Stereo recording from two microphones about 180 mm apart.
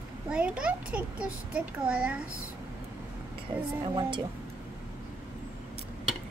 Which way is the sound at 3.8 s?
25° right (ahead or behind).